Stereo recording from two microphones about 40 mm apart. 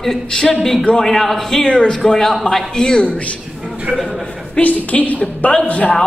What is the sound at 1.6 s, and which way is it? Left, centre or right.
Speech, left.